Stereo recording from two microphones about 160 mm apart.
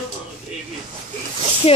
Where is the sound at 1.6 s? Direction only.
40° left (ahead or behind).